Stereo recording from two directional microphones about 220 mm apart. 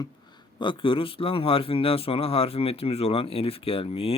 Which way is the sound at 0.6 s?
20° left (ahead or behind).